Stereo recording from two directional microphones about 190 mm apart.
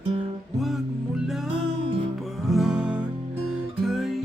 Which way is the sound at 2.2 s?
Centre (ahead or behind).